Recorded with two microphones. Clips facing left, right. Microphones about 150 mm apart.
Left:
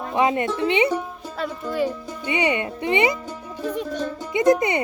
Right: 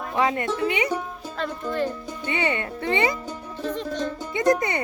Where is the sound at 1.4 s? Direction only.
5° left (ahead or behind).